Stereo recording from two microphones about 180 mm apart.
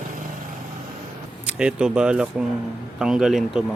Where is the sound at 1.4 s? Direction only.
5° right (ahead or behind).